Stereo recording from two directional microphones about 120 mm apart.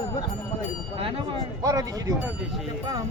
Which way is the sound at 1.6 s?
30° right (ahead or behind).